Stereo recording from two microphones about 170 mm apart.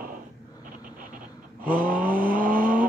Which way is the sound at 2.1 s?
55° right (ahead or behind).